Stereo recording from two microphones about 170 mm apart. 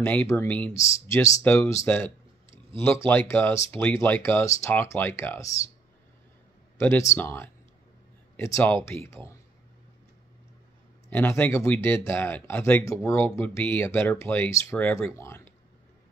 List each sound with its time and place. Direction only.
0.0 s speech: 10° left (ahead or behind)
6.8 s speech: 15° left (ahead or behind)
8.8 s speech: 15° left (ahead or behind)
11.1 s speech: 10° left (ahead or behind)